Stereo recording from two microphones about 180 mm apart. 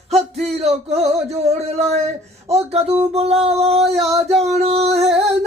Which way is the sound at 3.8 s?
Centre (ahead or behind).